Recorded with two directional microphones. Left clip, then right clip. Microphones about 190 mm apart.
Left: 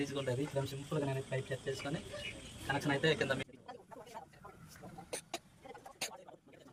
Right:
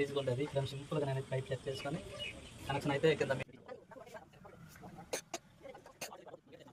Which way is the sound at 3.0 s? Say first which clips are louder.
Right 3 dB; 20° right (ahead or behind).